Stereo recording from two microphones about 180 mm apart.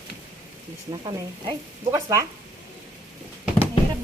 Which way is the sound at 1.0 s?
25° right (ahead or behind).